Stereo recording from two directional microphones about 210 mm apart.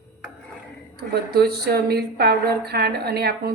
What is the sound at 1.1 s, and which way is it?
Speech, 50° right (ahead or behind).